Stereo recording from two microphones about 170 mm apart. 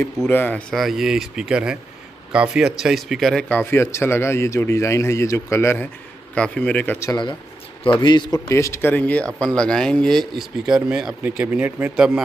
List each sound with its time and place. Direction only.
0.3 s speech: 10° left (ahead or behind)
7.1 s speech: 25° left (ahead or behind); by 12.1 s 10° right (ahead or behind)